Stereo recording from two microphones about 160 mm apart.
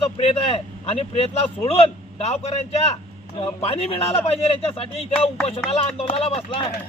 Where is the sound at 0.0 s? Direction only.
35° left (ahead or behind).